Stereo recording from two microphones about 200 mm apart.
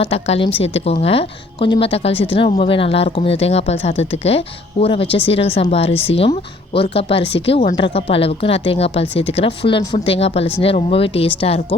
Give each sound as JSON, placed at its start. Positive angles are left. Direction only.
{"t": 0.0, "sound": "a woman's voice", "side_deg": 30}